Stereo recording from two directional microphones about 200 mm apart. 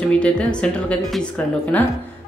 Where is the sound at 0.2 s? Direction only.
5° left (ahead or behind).